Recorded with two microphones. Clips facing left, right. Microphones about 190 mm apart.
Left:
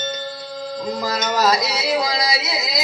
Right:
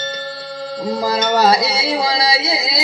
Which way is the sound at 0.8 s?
30° right (ahead or behind).